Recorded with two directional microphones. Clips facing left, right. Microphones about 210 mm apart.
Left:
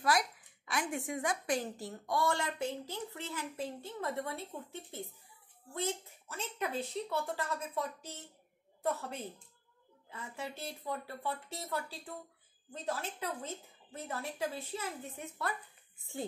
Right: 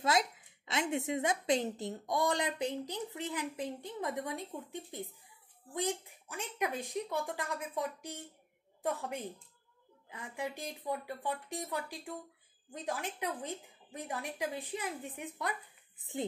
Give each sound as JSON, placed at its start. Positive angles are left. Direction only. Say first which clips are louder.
{"t": 0.0, "sound": "a woman's voice", "louder": "right 1 dB", "side_deg": -25}